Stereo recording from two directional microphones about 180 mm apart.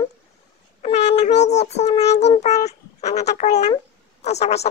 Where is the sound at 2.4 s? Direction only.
40° left (ahead or behind).